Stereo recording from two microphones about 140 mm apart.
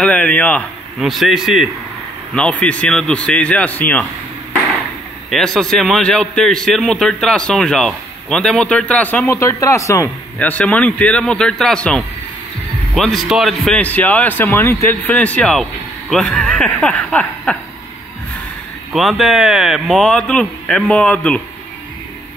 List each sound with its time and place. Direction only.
0.0 s a man's voice: 10° left (ahead or behind)
0.9 s a man's voice: centre (ahead or behind)
2.3 s a man's voice: 10° left (ahead or behind)
5.3 s a man's voice: 5° left (ahead or behind); by 10.5 s 20° left (ahead or behind)
10.5 s a man's voice: 10° left (ahead or behind)
18.9 s a man's voice: centre (ahead or behind)